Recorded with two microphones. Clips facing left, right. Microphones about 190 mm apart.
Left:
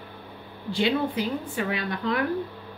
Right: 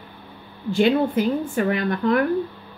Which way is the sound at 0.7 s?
50° right (ahead or behind).